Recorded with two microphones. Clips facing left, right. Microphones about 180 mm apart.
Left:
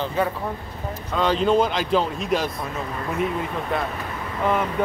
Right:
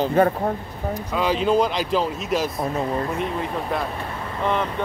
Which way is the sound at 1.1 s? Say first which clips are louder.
Left 1 dB; 5° right (ahead or behind).